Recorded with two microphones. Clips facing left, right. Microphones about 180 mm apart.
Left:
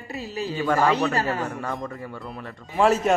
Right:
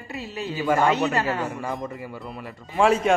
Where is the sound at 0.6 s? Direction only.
5° right (ahead or behind).